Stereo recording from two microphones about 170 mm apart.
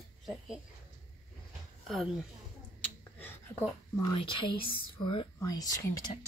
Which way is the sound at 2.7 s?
10° left (ahead or behind).